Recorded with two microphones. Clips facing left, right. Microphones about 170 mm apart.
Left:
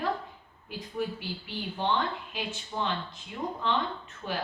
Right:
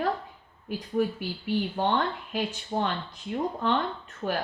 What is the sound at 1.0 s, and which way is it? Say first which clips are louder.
Speech: right 6 dB; 50° right (ahead or behind).